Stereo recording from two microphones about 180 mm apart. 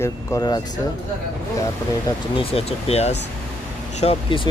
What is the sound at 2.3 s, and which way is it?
Speech, 35° left (ahead or behind).